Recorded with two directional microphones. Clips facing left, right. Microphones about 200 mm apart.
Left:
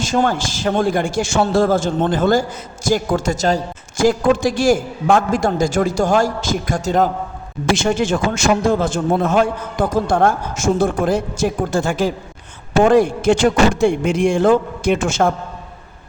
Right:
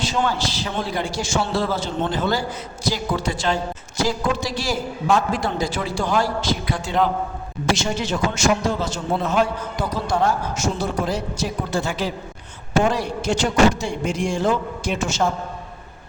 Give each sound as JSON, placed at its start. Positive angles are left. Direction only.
{"t": 0.0, "sound": "a man's voice", "side_deg": 45}